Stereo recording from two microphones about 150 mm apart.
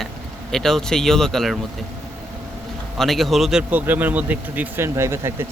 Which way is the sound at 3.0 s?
Centre (ahead or behind).